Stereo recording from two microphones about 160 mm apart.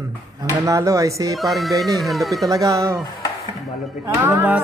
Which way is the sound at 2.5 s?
20° right (ahead or behind).